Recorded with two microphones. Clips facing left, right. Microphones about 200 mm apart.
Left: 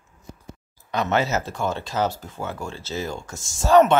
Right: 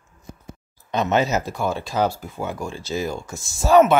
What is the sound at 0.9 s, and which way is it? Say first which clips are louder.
Speech: right 2 dB; 20° right (ahead or behind).